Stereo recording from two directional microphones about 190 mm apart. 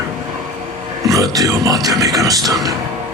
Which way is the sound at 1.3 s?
20° right (ahead or behind).